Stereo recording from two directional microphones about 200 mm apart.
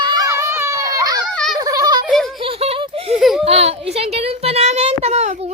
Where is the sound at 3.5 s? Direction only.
30° right (ahead or behind).